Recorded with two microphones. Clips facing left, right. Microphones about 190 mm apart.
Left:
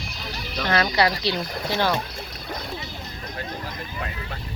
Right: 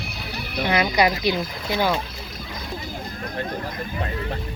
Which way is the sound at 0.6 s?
15° right (ahead or behind).